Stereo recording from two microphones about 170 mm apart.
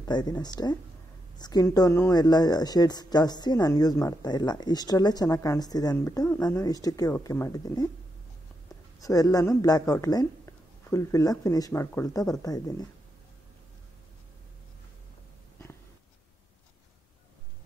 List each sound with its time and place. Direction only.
0.0 s speech: 25° left (ahead or behind)
9.0 s speech: 20° left (ahead or behind)